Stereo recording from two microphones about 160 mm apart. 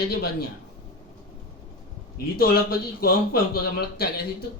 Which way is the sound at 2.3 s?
70° left (ahead or behind).